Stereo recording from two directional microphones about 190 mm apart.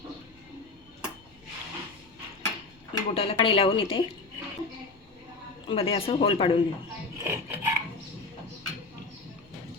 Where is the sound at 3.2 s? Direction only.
30° left (ahead or behind).